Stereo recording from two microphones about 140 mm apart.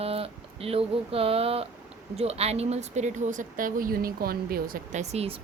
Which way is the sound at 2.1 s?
45° right (ahead or behind).